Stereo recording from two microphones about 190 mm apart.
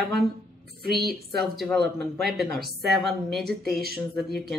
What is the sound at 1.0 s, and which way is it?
Speech, 55° right (ahead or behind).